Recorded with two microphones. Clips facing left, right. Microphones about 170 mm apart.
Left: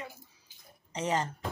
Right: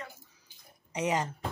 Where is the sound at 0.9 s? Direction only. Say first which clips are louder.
Right 1 dB; 10° right (ahead or behind).